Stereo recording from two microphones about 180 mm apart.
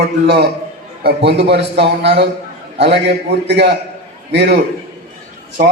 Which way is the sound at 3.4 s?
70° right (ahead or behind).